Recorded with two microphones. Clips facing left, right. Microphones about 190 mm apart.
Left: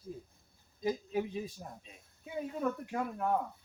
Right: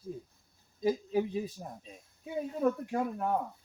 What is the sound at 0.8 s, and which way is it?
Speech, 35° right (ahead or behind).